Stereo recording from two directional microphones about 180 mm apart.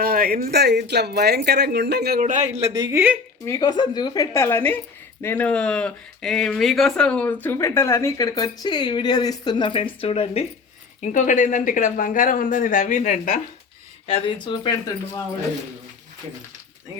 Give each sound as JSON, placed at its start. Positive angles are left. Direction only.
{"t": 0.0, "sound": "speech", "side_deg": -55}
{"t": 2.5, "sound": "speech", "side_deg": -20}
{"t": 3.4, "sound": "speech", "side_deg": 20}
{"t": 11.0, "sound": "speech", "side_deg": 45}
{"t": 14.1, "sound": "speech", "side_deg": 30}